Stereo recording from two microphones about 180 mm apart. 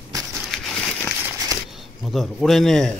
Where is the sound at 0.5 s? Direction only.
Centre (ahead or behind).